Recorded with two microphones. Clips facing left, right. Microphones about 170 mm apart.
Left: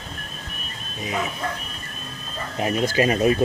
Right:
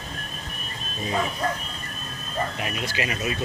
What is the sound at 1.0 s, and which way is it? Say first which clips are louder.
Speech: right 1 dB; 15° left (ahead or behind).